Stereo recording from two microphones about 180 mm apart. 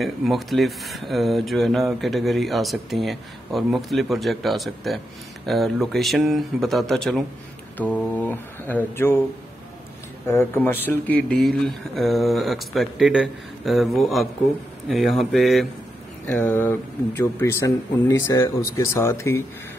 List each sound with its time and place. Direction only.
0.0 s speech: centre (ahead or behind)
10.2 s speech: 15° left (ahead or behind)